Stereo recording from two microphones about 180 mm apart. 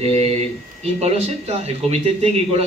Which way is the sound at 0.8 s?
35° right (ahead or behind).